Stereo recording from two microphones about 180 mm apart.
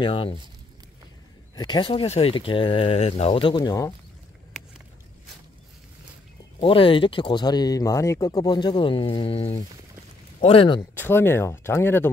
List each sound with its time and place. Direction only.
0.0 s speech: 30° left (ahead or behind)
1.5 s speech: 25° left (ahead or behind)
6.6 s speech: 30° left (ahead or behind)
10.8 s speech: 10° left (ahead or behind)